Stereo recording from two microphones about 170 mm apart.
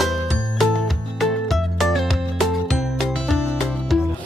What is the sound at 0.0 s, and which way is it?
Music, centre (ahead or behind).